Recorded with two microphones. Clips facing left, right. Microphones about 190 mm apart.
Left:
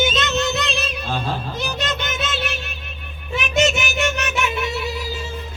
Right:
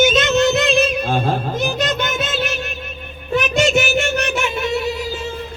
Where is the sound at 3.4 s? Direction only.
40° right (ahead or behind).